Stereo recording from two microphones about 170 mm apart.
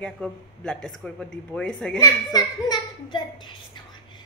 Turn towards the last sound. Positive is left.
turn(degrees=25)  # may be behind; listen again after turning